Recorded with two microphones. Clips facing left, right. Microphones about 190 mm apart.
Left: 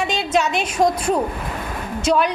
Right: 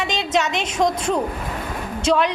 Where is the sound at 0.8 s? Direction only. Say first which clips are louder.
Left 2 dB; 5° left (ahead or behind).